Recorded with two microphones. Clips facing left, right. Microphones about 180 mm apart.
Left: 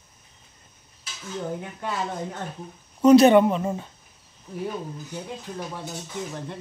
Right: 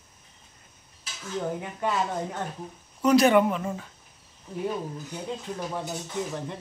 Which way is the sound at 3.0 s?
25° left (ahead or behind).